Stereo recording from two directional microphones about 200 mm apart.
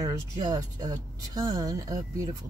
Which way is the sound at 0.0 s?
20° right (ahead or behind).